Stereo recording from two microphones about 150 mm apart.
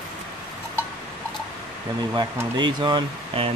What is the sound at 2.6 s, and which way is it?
Speech, 30° right (ahead or behind).